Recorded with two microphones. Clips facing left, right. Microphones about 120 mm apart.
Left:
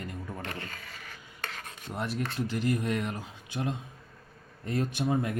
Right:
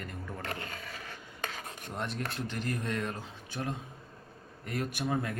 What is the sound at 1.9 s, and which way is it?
Speech, 5° left (ahead or behind).